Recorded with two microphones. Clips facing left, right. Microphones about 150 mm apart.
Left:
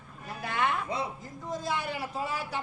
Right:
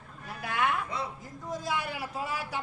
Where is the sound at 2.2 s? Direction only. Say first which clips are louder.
Even; 10° right (ahead or behind).